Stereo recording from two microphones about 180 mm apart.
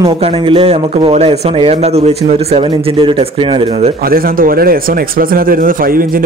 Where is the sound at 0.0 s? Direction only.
30° right (ahead or behind).